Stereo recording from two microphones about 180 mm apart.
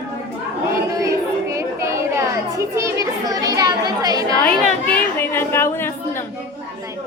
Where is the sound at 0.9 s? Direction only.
15° right (ahead or behind).